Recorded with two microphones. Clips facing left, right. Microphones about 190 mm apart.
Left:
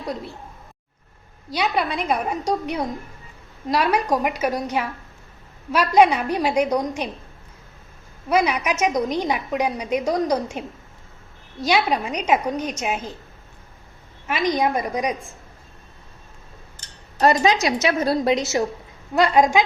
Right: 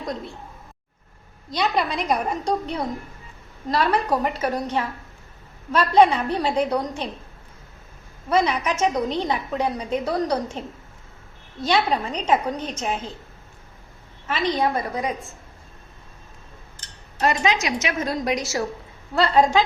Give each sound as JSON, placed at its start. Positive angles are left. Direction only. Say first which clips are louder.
{"t": 0.0, "sound": "a woman's voice", "louder": "left 1 dB", "side_deg": 5}
{"t": 1.5, "sound": "a woman's voice", "louder": "even", "side_deg": 5}
{"t": 8.3, "sound": "a woman's voice", "louder": "left 1 dB", "side_deg": 10}
{"t": 14.3, "sound": "a woman's voice", "louder": "left 1 dB", "side_deg": 10}
{"t": 17.2, "sound": "a woman's voice", "louder": "left 4 dB", "side_deg": 35}
{"t": 19.1, "sound": "a woman's voice", "louder": "left 1 dB", "side_deg": 10}